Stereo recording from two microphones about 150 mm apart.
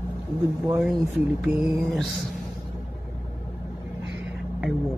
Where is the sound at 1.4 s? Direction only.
Centre (ahead or behind).